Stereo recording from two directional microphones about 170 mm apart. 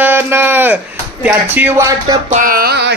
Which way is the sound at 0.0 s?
10° right (ahead or behind).